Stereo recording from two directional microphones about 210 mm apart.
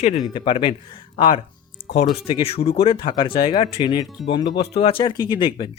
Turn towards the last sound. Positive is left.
turn(degrees=25)  # may be behind; listen again after turning